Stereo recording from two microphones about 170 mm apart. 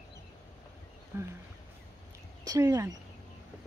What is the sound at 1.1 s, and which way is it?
Speech, 15° right (ahead or behind).